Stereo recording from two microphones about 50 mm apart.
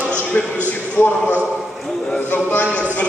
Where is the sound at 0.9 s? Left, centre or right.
Left.